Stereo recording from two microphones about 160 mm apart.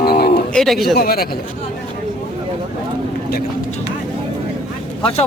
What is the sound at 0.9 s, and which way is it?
Speech, 70° left (ahead or behind).